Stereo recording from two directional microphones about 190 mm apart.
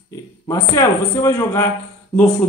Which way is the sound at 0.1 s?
15° left (ahead or behind).